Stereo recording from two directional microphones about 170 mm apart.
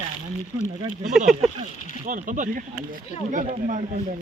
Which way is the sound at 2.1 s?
50° right (ahead or behind).